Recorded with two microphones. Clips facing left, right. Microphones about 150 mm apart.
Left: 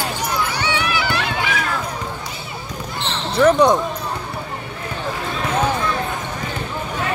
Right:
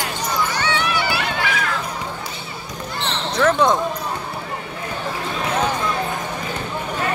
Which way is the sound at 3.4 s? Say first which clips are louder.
Left 4 dB; 15° left (ahead or behind).